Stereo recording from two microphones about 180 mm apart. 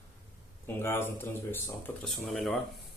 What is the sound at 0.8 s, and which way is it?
Speech, 15° left (ahead or behind).